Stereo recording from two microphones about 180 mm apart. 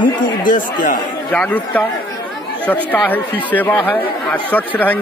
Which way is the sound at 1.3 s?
10° left (ahead or behind).